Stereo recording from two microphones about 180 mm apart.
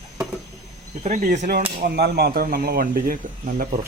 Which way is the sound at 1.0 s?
40° right (ahead or behind).